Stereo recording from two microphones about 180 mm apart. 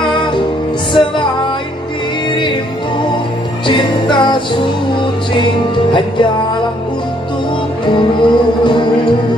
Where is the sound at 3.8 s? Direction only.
25° left (ahead or behind).